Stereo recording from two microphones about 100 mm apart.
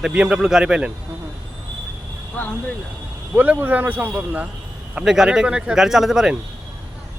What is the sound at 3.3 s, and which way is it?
Speech, 15° right (ahead or behind).